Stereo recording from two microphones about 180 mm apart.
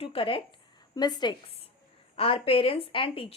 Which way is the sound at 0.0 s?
30° left (ahead or behind).